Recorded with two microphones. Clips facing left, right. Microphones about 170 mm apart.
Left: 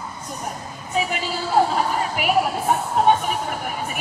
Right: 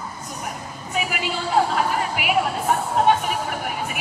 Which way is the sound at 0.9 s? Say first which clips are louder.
Left 3 dB; 30° left (ahead or behind).